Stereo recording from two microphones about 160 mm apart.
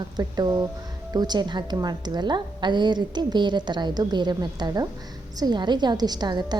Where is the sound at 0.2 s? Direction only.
25° right (ahead or behind).